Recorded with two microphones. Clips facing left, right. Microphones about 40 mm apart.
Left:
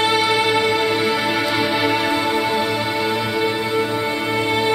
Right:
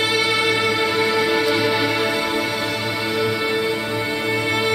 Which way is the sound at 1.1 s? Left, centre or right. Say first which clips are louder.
Right 1 dB; centre.